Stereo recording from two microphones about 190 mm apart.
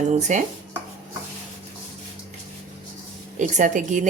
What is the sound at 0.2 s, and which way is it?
Speech, 40° right (ahead or behind).